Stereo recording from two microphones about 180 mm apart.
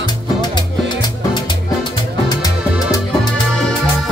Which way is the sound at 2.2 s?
20° left (ahead or behind).